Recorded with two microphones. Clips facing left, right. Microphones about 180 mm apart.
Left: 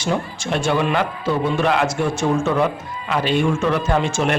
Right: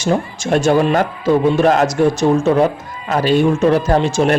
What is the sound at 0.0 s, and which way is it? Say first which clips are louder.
A man's voice: right 5 dB; 45° right (ahead or behind).